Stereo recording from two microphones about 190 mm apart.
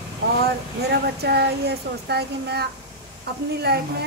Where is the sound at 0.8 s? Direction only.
60° right (ahead or behind).